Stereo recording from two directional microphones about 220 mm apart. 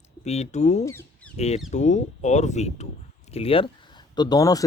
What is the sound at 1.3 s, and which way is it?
Speech, 30° left (ahead or behind).